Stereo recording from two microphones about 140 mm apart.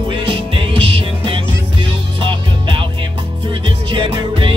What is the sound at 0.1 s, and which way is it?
Music, 35° right (ahead or behind).